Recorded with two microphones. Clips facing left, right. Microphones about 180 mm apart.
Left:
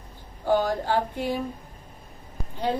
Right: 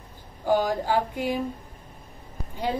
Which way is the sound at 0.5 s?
10° right (ahead or behind).